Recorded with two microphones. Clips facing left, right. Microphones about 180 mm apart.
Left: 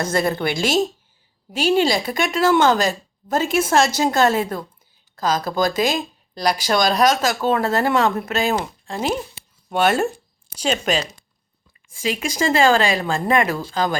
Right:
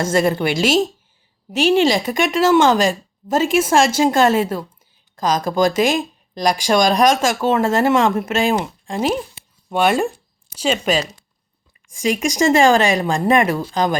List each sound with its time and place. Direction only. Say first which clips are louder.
0.1 s speech: right 4 dB; 10° right (ahead or behind)
12.3 s speech: right 3 dB; 15° right (ahead or behind)